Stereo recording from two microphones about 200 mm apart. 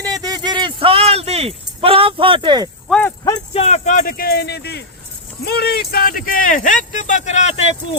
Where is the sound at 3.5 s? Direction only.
30° left (ahead or behind).